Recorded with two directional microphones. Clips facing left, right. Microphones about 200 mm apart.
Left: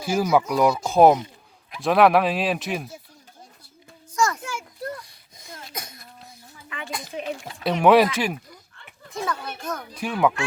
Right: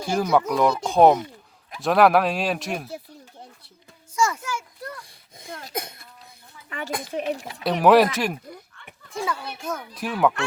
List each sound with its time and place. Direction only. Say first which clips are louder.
0.0 s speech: left 1 dB; 5° left (ahead or behind)
4.1 s children playing: even; 5° right (ahead or behind)
4.4 s a sound: even; 25° left (ahead or behind)
6.8 s a child's voice: right 4 dB; 55° right (ahead or behind)
7.6 s a child's voice: even; centre (ahead or behind)